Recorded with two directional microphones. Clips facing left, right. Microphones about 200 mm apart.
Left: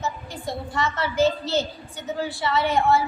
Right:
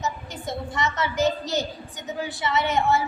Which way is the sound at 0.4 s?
20° right (ahead or behind).